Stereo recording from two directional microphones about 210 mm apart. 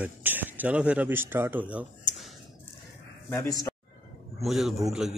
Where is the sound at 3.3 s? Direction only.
15° left (ahead or behind).